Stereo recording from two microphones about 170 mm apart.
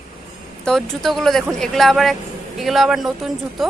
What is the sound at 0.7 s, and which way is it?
A woman's voice, centre (ahead or behind).